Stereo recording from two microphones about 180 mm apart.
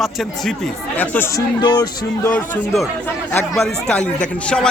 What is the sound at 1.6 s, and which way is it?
Speech, 25° left (ahead or behind).